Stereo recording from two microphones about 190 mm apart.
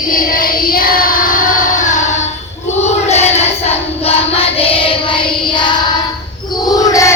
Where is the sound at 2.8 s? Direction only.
35° left (ahead or behind).